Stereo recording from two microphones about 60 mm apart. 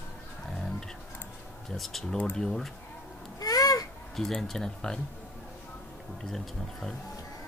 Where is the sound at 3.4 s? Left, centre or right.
Left.